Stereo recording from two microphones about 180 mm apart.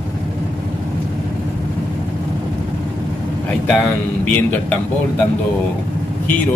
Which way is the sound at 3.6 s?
5° left (ahead or behind).